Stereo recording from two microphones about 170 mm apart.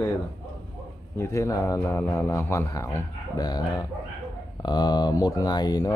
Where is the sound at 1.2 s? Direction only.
20° left (ahead or behind).